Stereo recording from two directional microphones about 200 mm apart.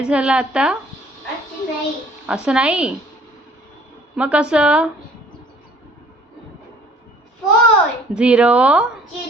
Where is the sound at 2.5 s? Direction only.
5° right (ahead or behind).